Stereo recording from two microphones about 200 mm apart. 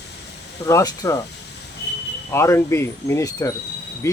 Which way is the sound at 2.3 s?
15° left (ahead or behind).